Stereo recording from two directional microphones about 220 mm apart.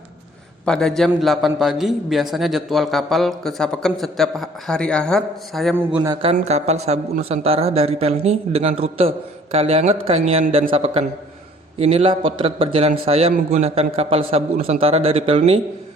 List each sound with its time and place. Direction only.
0.6 s a man's voice: 5° left (ahead or behind)
5.7 s a man's voice: 10° right (ahead or behind)
6.3 s a man's voice: 30° right (ahead or behind)